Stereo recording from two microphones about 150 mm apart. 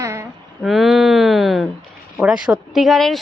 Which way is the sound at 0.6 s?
Centre (ahead or behind).